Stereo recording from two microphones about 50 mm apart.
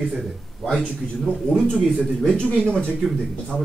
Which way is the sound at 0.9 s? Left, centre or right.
Centre.